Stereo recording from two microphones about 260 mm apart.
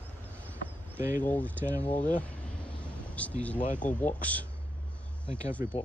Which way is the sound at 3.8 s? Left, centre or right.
Centre.